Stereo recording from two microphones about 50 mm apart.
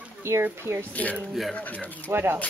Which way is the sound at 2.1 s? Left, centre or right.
Right.